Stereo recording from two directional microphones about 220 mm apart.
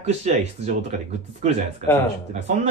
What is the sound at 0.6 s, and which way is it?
Speech, 30° right (ahead or behind).